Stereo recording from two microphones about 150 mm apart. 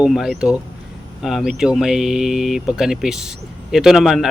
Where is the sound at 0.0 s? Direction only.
Centre (ahead or behind).